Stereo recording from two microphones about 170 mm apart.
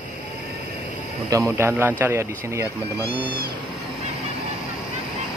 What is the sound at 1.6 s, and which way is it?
Speech, 15° right (ahead or behind).